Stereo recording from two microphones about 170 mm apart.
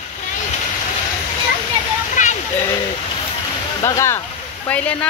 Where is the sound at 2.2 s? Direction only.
50° left (ahead or behind).